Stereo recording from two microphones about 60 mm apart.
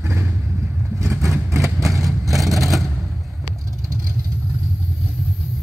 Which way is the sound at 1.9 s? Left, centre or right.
Right.